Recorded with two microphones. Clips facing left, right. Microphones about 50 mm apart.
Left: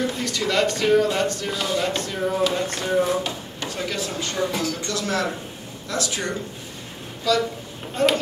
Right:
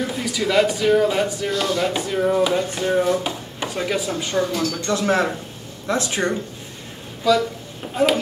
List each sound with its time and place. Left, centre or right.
0.0 s speech: centre
4.8 s speech: right
7.3 s speech: centre